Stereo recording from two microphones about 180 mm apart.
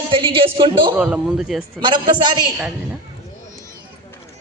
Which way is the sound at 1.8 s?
25° right (ahead or behind).